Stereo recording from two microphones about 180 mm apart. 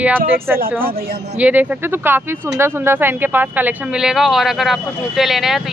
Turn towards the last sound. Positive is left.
turn(degrees=0)  # may be behind; listen again after turning